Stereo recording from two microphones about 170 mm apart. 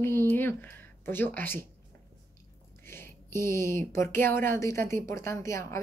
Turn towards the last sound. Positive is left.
turn(degrees=15)  # may be behind; listen again after turning